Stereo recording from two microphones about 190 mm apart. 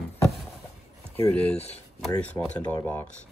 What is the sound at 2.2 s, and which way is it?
Speech, 5° left (ahead or behind).